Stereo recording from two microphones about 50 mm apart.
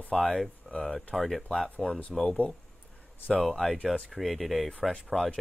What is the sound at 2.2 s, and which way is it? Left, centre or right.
Speech, left.